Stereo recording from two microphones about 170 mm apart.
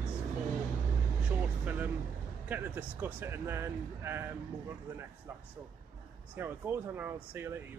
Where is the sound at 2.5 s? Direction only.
10° right (ahead or behind).